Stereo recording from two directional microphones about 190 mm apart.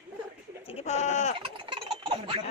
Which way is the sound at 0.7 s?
35° left (ahead or behind).